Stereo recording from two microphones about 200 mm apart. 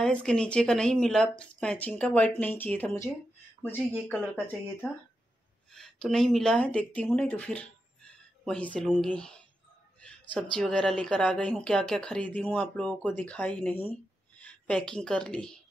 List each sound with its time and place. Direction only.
0.0 s speech: 5° left (ahead or behind)
3.7 s speech: 10° right (ahead or behind)
5.7 s speech: centre (ahead or behind)